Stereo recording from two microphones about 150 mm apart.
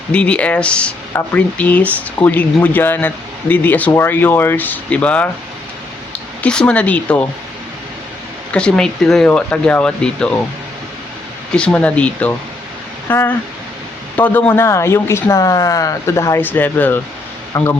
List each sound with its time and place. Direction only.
0.1 s speech: 10° left (ahead or behind)
6.4 s speech: 5° left (ahead or behind)
8.5 s speech: 5° left (ahead or behind)
11.5 s speech: 10° left (ahead or behind)